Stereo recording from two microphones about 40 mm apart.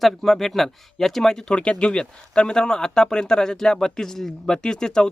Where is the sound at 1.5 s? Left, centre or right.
Left.